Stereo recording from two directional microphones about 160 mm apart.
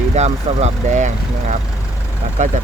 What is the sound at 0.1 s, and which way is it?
Speech, 45° right (ahead or behind).